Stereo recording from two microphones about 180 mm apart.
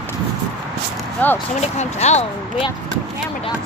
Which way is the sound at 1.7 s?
40° left (ahead or behind).